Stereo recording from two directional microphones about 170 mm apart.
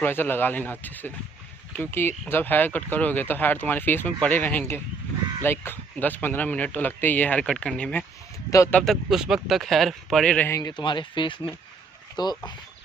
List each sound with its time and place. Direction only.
0.0 s speech: 10° left (ahead or behind)
8.5 s speech: 20° left (ahead or behind)
8.7 s speech: centre (ahead or behind)
10.6 s speech: 25° left (ahead or behind)